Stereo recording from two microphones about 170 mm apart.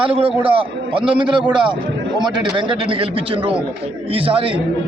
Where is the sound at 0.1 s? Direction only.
35° right (ahead or behind).